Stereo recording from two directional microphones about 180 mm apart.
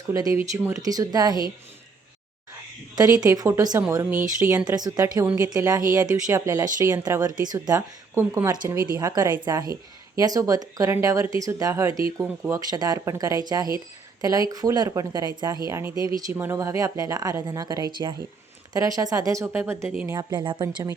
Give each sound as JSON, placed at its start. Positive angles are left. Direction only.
{"t": 0.1, "sound": "speech", "side_deg": -20}
{"t": 2.9, "sound": "speech", "side_deg": -20}
{"t": 5.2, "sound": "speech", "side_deg": -5}
{"t": 5.5, "sound": "speech", "side_deg": -20}